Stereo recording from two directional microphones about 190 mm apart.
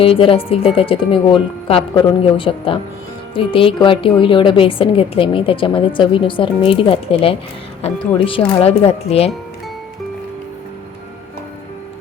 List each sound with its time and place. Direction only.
0.0 s a woman's voice: 30° left (ahead or behind)